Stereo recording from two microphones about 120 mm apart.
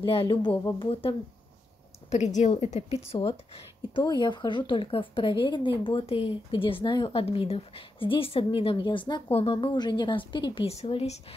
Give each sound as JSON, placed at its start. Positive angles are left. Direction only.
{"t": 0.0, "sound": "speech", "side_deg": 45}
{"t": 2.0, "sound": "a woman's voice", "side_deg": 80}
{"t": 3.1, "sound": "speech", "side_deg": 50}